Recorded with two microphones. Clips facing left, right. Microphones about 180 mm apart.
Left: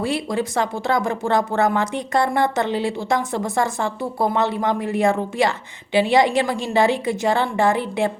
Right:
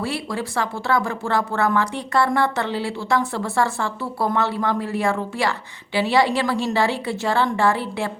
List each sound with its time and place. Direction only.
0.0 s speech: 20° left (ahead or behind)